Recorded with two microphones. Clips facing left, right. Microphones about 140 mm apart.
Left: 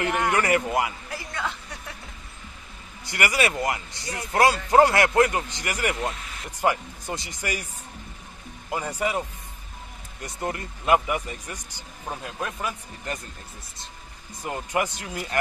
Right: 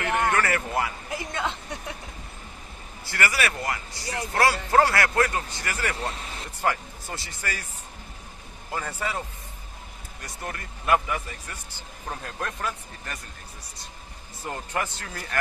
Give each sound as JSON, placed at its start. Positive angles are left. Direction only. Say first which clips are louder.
{"t": 0.0, "sound": "a man's voice", "louder": "left 1 dB", "side_deg": 20}
{"t": 1.1, "sound": "a sound", "louder": "right 2 dB", "side_deg": -20}
{"t": 3.1, "sound": "speech", "louder": "left 2 dB", "side_deg": 20}
{"t": 6.1, "sound": "a sound", "louder": "right 3 dB", "side_deg": -30}
{"t": 6.6, "sound": "speech", "louder": "left 3 dB", "side_deg": 15}
{"t": 8.6, "sound": "speech", "louder": "left 4 dB", "side_deg": 15}
{"t": 10.2, "sound": "speech", "louder": "left 6 dB", "side_deg": 20}
{"t": 14.4, "sound": "speech", "louder": "left 4 dB", "side_deg": 15}